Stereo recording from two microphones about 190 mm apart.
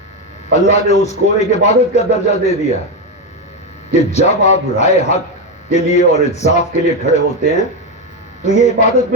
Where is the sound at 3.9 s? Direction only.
35° left (ahead or behind).